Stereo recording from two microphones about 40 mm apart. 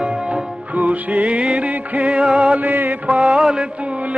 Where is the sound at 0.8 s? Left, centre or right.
Right.